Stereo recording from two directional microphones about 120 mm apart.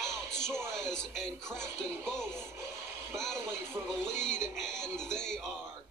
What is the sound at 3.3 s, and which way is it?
Speech, 20° right (ahead or behind).